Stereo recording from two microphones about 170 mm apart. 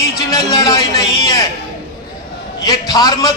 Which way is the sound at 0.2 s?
20° left (ahead or behind).